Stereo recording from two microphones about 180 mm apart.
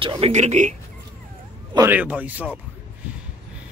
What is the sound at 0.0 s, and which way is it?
Speech, 30° right (ahead or behind).